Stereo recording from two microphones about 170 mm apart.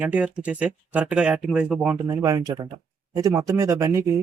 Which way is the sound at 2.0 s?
20° right (ahead or behind).